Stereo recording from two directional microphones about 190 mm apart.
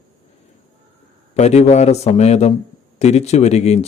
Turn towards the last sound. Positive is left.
turn(degrees=35)  # may be behind; listen again after turning